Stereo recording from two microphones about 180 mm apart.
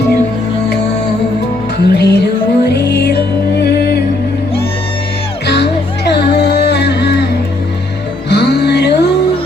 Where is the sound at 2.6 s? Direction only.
65° left (ahead or behind).